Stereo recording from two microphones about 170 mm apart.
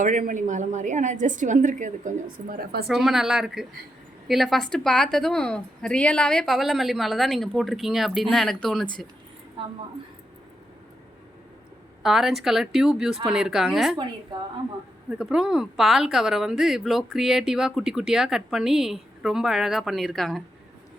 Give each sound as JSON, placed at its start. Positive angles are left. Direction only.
{"t": 0.0, "sound": "a woman's voice", "side_deg": -50}
{"t": 2.8, "sound": "a woman's voice", "side_deg": 0}
{"t": 9.6, "sound": "a woman's voice", "side_deg": -30}
{"t": 12.0, "sound": "a woman's voice", "side_deg": 0}
{"t": 15.1, "sound": "a woman's voice", "side_deg": -5}